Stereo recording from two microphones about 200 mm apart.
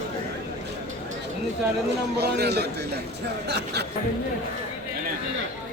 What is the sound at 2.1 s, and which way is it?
Speech, 55° right (ahead or behind).